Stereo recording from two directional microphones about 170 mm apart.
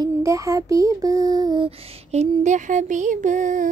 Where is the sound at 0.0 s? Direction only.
20° right (ahead or behind).